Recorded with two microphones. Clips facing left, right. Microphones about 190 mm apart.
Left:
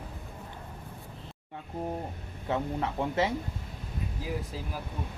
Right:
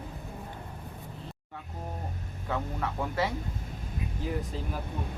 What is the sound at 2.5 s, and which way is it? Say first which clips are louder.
Speech: left 3 dB; 25° left (ahead or behind).